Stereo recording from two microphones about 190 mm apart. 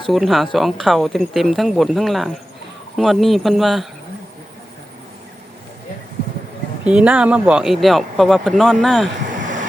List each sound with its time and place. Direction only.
0.1 s speech: centre (ahead or behind)
6.8 s speech: 5° right (ahead or behind)
9.4 s train: 40° right (ahead or behind)